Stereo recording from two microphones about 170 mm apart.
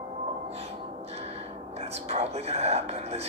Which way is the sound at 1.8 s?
40° right (ahead or behind).